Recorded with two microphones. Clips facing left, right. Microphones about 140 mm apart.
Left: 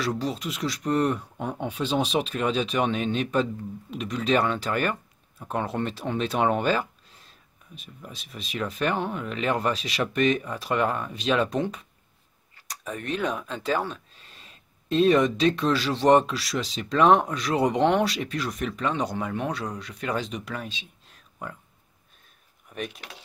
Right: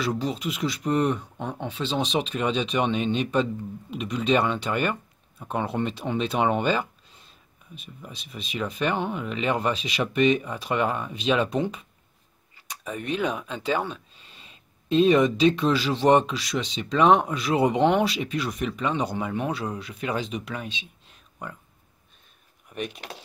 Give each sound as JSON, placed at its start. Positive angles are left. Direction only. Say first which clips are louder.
{"t": 0.0, "sound": "speech", "louder": "right 1 dB", "side_deg": 0}